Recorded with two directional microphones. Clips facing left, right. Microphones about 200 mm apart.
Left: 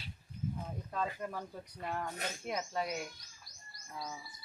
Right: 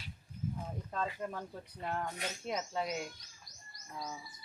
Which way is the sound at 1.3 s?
Centre (ahead or behind).